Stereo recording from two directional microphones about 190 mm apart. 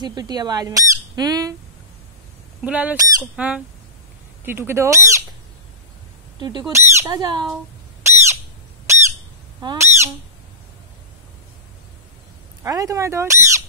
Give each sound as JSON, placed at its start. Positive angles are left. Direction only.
{"t": 0.0, "sound": "fowl", "side_deg": -20}
{"t": 2.6, "sound": "speech", "side_deg": -5}
{"t": 6.7, "sound": "fowl", "side_deg": -15}
{"t": 8.0, "sound": "squawk", "side_deg": -15}
{"t": 9.6, "sound": "speech", "side_deg": -20}
{"t": 12.6, "sound": "speech", "side_deg": -15}